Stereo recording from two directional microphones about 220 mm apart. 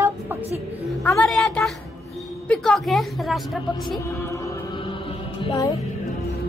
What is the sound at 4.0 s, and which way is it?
Mantra, 15° left (ahead or behind).